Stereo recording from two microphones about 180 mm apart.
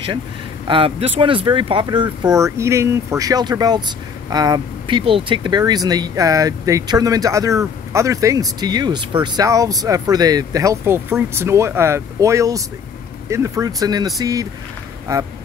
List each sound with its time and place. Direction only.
0.7 s speech: 30° right (ahead or behind)